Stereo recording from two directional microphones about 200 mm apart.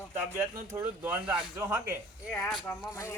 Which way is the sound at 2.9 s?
15° left (ahead or behind).